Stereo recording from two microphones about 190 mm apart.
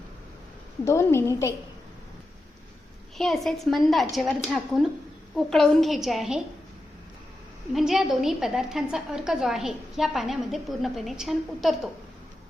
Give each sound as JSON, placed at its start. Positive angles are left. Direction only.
{"t": 0.9, "sound": "a woman's voice", "side_deg": 15}
{"t": 3.2, "sound": "a woman's voice", "side_deg": 0}
{"t": 7.7, "sound": "a woman's voice", "side_deg": 0}